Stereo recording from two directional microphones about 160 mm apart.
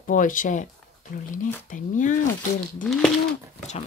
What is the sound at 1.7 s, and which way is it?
Speech, 50° left (ahead or behind).